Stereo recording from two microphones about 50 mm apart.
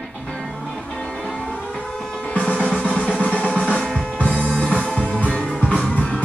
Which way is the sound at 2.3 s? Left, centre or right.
Left.